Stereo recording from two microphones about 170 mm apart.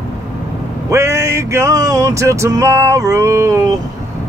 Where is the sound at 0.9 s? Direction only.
15° right (ahead or behind).